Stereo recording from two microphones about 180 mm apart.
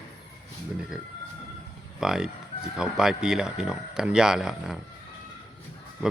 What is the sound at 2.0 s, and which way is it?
Speech, 5° right (ahead or behind).